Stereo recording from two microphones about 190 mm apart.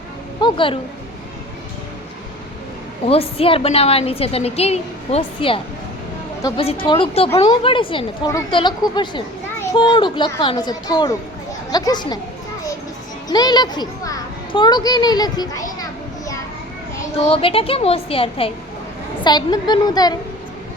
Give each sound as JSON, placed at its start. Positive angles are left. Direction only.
{"t": 0.4, "sound": "a child's voice", "side_deg": 25}
{"t": 3.1, "sound": "a woman's voice", "side_deg": 30}
{"t": 6.4, "sound": "a woman's voice", "side_deg": 20}
{"t": 13.2, "sound": "a child's voice", "side_deg": 20}
{"t": 17.2, "sound": "a child's voice", "side_deg": 30}